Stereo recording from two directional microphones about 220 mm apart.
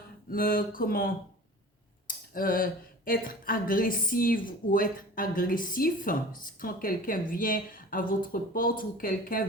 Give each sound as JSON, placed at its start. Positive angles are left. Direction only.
{"t": 0.3, "sound": "speech", "side_deg": 40}